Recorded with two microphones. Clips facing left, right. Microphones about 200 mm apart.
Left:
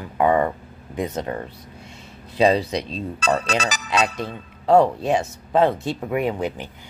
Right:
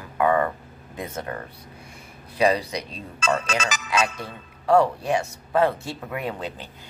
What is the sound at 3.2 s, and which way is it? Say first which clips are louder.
Speech: left 2 dB; 35° left (ahead or behind).